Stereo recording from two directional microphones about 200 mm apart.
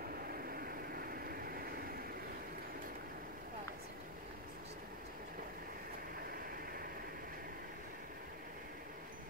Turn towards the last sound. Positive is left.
turn(degrees=-45)  # may be behind; listen again after turning